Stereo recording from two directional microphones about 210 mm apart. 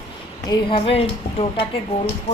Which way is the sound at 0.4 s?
20° left (ahead or behind).